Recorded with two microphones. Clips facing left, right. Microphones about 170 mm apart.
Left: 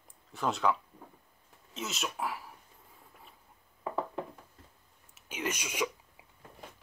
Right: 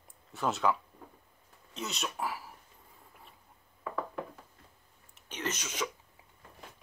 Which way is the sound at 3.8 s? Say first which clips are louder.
Left 3 dB; 25° left (ahead or behind).